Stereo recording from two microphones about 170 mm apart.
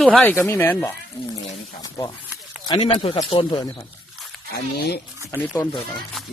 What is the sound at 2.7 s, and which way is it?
Speech, 35° left (ahead or behind).